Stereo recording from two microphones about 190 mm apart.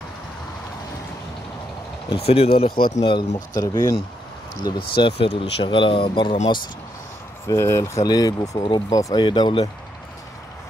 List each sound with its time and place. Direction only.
2.0 s speech: 30° left (ahead or behind)
7.4 s speech: 15° left (ahead or behind)